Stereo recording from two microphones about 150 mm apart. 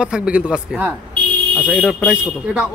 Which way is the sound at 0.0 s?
5° right (ahead or behind).